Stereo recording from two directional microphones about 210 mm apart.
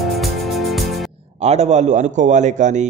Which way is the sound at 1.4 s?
30° right (ahead or behind).